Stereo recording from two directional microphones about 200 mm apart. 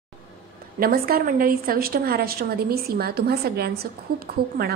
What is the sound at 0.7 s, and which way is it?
A woman's voice, 45° right (ahead or behind).